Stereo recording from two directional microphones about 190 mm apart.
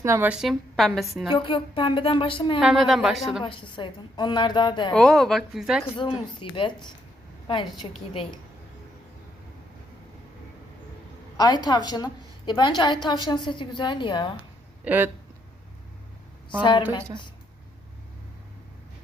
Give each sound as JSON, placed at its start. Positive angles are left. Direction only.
{"t": 0.0, "sound": "a woman's voice", "side_deg": -10}
{"t": 1.3, "sound": "a woman's voice", "side_deg": 25}
{"t": 2.6, "sound": "a woman's voice", "side_deg": 0}
{"t": 3.4, "sound": "a woman's voice", "side_deg": 25}
{"t": 4.9, "sound": "a woman's voice", "side_deg": 5}
{"t": 6.0, "sound": "a woman's voice", "side_deg": 25}
{"t": 11.3, "sound": "a woman's voice", "side_deg": 20}
{"t": 14.8, "sound": "speech", "side_deg": -10}